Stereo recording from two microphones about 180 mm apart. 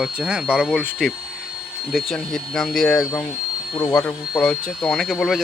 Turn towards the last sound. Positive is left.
turn(degrees=0)  # may be behind; listen again after turning